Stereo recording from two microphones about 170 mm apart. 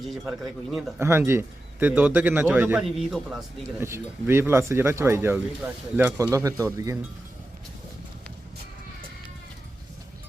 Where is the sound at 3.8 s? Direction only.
15° right (ahead or behind).